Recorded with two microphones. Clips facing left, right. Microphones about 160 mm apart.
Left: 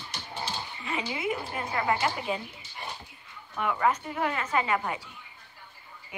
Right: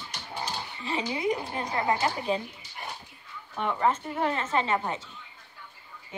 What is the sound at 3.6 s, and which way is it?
A woman's voice, 30° right (ahead or behind).